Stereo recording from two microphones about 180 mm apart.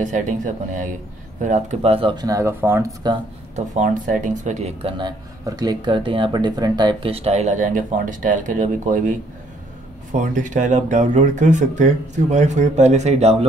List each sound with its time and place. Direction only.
0.0 s speech: 45° right (ahead or behind); by 3.1 s 15° right (ahead or behind)
3.5 s speech: 40° right (ahead or behind)